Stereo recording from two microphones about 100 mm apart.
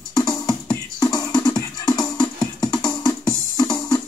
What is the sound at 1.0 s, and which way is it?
Music, 35° left (ahead or behind).